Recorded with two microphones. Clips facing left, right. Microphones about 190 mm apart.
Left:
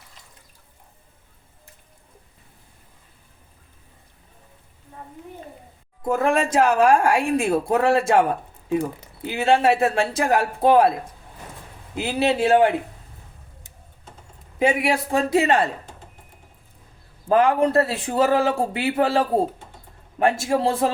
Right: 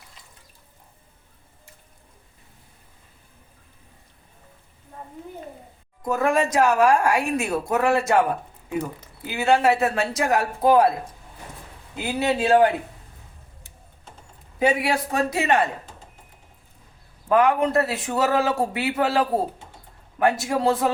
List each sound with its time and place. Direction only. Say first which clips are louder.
6.1 s a woman's voice: left 1 dB; 25° left (ahead or behind)
9.2 s a woman's voice: left 1 dB; 25° left (ahead or behind)
12.0 s a woman's voice: left 2 dB; 25° left (ahead or behind)
14.6 s a woman's voice: left 1 dB; 25° left (ahead or behind)
17.2 s a woman's voice: left 1 dB; 30° left (ahead or behind)